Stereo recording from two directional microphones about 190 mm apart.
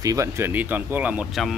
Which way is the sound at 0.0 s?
15° right (ahead or behind).